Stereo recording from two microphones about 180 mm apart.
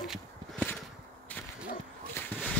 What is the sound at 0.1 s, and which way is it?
Walk, 5° left (ahead or behind).